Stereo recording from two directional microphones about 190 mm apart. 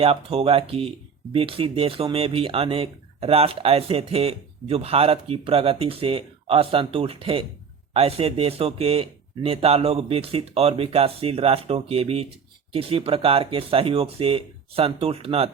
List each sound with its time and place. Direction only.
0.0 s speech: 30° right (ahead or behind)